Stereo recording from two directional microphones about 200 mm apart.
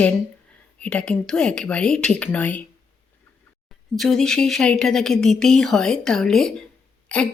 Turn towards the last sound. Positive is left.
turn(degrees=5)  # may be behind; listen again after turning